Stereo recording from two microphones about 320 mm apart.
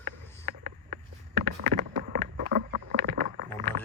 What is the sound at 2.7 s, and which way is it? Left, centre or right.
Rowboat, right.